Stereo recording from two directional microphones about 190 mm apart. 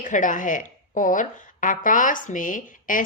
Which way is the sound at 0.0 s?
40° left (ahead or behind).